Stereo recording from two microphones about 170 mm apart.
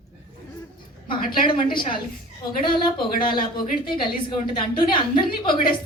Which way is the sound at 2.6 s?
30° left (ahead or behind).